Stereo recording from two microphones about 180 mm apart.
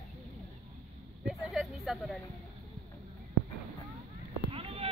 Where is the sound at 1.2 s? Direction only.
Centre (ahead or behind).